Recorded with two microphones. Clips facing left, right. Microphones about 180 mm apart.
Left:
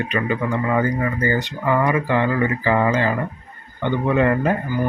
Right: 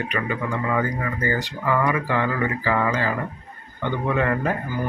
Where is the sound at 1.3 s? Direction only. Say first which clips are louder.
Left 3 dB; 20° left (ahead or behind).